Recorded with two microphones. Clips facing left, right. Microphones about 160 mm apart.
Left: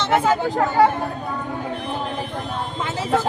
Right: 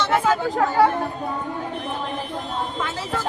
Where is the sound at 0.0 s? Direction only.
20° left (ahead or behind).